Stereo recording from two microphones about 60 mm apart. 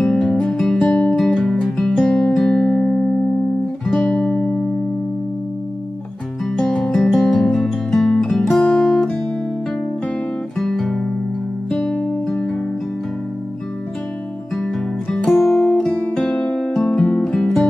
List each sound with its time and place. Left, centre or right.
0.0 s music: centre
3.8 s music: centre
4.1 s music: left
6.4 s music: centre
8.6 s guitar: centre
10.6 s guitar: centre
11.7 s music: centre
15.3 s music: centre
16.3 s music: centre